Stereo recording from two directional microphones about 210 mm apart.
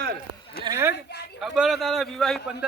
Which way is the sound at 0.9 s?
50° left (ahead or behind).